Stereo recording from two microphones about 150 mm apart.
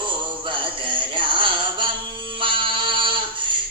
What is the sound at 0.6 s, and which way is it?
Music, 35° right (ahead or behind).